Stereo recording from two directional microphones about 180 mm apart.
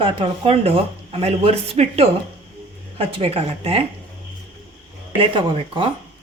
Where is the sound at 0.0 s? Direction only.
30° right (ahead or behind).